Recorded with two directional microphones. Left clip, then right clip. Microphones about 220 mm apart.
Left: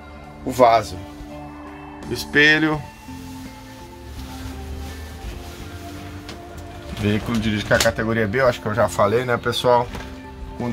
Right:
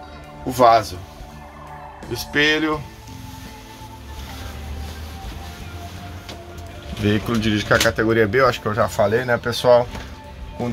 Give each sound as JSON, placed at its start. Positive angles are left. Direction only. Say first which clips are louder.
{"t": 0.5, "sound": "speech", "louder": "right 1 dB", "side_deg": 0}
{"t": 2.1, "sound": "speech", "louder": "left 3 dB", "side_deg": 20}
{"t": 7.1, "sound": "speech", "louder": "right 3 dB", "side_deg": -5}